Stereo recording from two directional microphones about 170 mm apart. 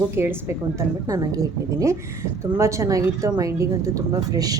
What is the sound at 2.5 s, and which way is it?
A woman's voice, 15° right (ahead or behind).